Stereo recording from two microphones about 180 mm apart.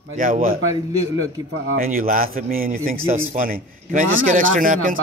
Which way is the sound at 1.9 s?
50° right (ahead or behind).